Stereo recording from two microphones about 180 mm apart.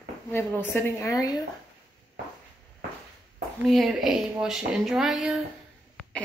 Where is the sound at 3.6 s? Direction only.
Centre (ahead or behind).